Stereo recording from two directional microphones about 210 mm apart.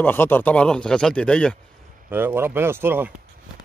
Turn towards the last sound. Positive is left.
turn(degrees=-10)  # may be behind; listen again after turning